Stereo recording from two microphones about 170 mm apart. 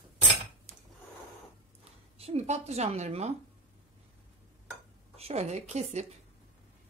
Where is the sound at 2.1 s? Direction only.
40° right (ahead or behind).